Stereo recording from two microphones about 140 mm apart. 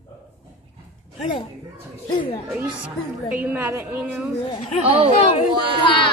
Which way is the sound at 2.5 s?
10° right (ahead or behind).